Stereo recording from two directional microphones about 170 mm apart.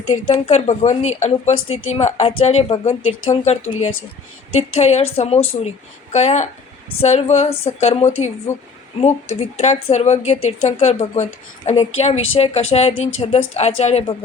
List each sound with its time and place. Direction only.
0.3 s speech: 40° left (ahead or behind)
4.8 s speech: 40° left (ahead or behind)